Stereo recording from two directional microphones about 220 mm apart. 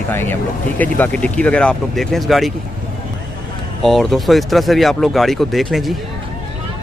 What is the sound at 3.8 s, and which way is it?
Speech, centre (ahead or behind).